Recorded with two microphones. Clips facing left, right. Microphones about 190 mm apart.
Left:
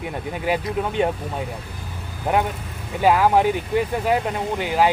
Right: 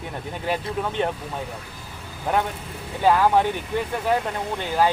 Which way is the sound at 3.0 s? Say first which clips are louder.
Left 2 dB; 15° left (ahead or behind).